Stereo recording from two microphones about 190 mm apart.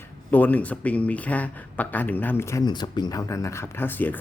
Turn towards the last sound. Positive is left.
turn(degrees=10)  # may be behind; listen again after turning